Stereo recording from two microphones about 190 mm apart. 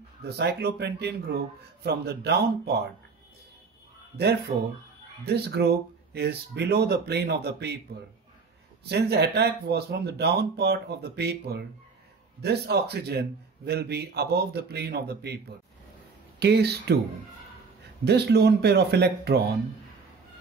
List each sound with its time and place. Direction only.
0.2 s a man's voice: 60° right (ahead or behind)
4.2 s a man's voice: 60° right (ahead or behind)
8.8 s a man's voice: 60° right (ahead or behind)
18.0 s a man's voice: 60° right (ahead or behind)